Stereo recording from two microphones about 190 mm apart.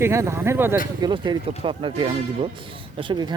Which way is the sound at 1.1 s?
25° right (ahead or behind).